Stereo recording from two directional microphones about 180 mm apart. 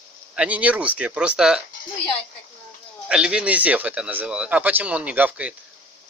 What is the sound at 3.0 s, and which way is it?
A man's voice, 5° right (ahead or behind).